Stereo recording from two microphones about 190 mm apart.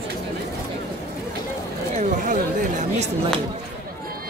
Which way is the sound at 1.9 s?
40° right (ahead or behind).